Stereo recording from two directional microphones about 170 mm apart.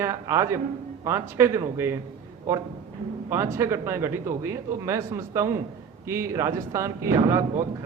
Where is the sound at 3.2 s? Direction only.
15° right (ahead or behind).